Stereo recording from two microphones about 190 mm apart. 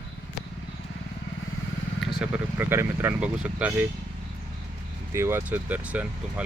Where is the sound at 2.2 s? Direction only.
10° right (ahead or behind).